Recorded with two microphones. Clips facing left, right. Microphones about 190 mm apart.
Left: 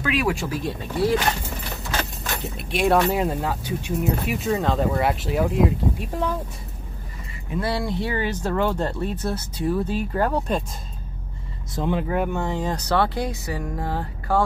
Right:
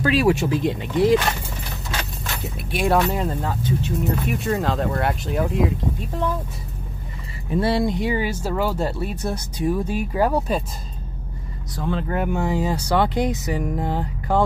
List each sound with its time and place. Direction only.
0.0 s speech: 30° right (ahead or behind)
2.5 s speech: centre (ahead or behind)
4.4 s speech: centre (ahead or behind)
7.5 s speech: 25° right (ahead or behind); by 10.6 s 10° right (ahead or behind)
11.7 s speech: 15° left (ahead or behind)
12.1 s speech: 5° right (ahead or behind)